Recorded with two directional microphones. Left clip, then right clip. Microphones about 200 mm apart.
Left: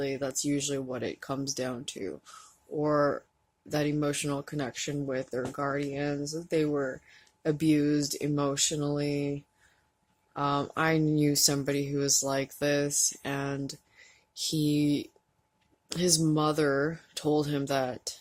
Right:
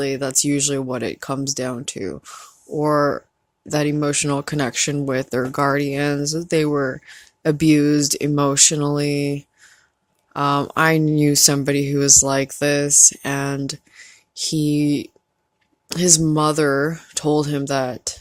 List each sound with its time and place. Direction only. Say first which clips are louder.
0.0 s speech: right 10 dB; 45° right (ahead or behind); by 18.2 s 30° right (ahead or behind)